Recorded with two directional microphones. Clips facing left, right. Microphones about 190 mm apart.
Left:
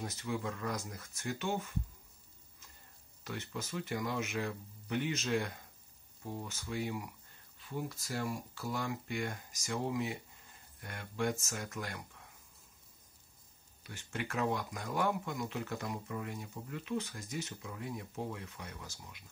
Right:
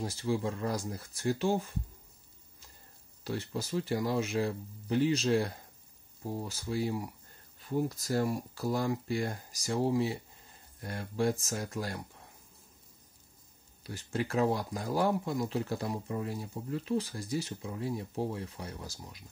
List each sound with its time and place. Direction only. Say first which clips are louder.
0.0 s speech: right 6 dB; 30° right (ahead or behind)
3.3 s speech: right 6 dB; 35° right (ahead or behind)
13.8 s speech: right 7 dB; 35° right (ahead or behind)